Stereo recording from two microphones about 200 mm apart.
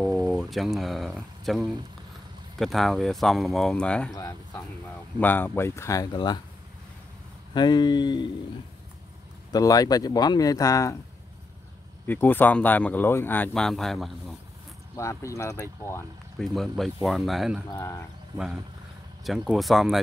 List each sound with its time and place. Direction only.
0.3 s speech: centre (ahead or behind)
4.2 s speech: 15° left (ahead or behind)
7.5 s speech: 20° left (ahead or behind)
9.5 s speech: 20° left (ahead or behind)
12.1 s speech: 10° left (ahead or behind)
15.0 s speech: 15° left (ahead or behind); by 17.6 s centre (ahead or behind)
17.6 s speech: 15° left (ahead or behind)
19.2 s speech: centre (ahead or behind)